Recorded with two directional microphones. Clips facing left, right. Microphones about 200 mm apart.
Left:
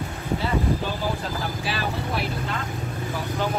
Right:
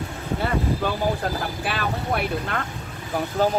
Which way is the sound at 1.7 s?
55° right (ahead or behind).